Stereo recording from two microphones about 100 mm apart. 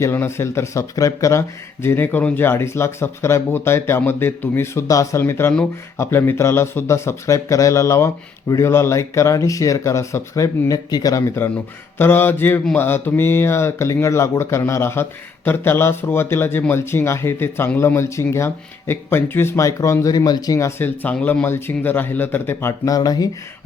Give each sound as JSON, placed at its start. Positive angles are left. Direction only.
{"t": 0.0, "sound": "speech", "side_deg": 25}
{"t": 22.9, "sound": "speech", "side_deg": 40}